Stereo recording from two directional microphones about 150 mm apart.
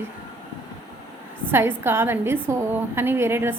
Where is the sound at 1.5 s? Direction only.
15° right (ahead or behind).